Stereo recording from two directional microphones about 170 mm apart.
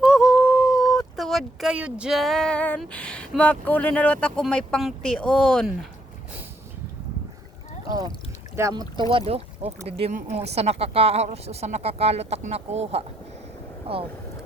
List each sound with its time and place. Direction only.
0.0 s a sound: 5° right (ahead or behind)
1.1 s speech: centre (ahead or behind)
8.5 s speech: 20° right (ahead or behind)